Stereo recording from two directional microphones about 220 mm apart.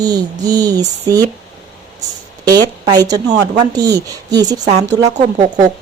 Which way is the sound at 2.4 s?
15° right (ahead or behind).